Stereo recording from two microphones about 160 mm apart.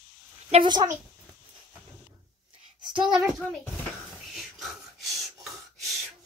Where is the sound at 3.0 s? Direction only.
5° right (ahead or behind).